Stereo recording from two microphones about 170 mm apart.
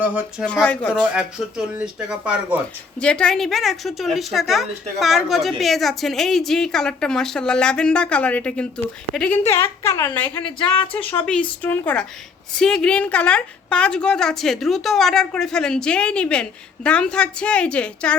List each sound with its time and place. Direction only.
0.0 s speech: 5° right (ahead or behind)
0.4 s a woman's voice: 5° left (ahead or behind)
3.0 s a woman's voice: 5° left (ahead or behind)